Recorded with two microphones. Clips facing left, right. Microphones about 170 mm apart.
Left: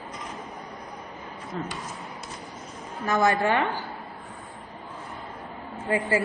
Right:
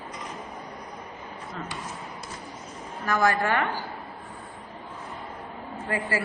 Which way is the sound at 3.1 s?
20° left (ahead or behind).